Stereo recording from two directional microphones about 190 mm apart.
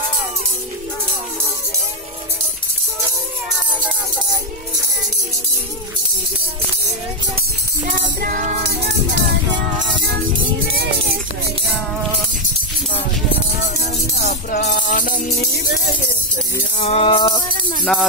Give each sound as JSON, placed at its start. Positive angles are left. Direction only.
{"t": 7.9, "sound": "music", "side_deg": -50}
{"t": 10.8, "sound": "speech", "side_deg": -55}
{"t": 14.1, "sound": "music", "side_deg": 55}
{"t": 16.7, "sound": "music", "side_deg": 35}
{"t": 17.9, "sound": "speech", "side_deg": 0}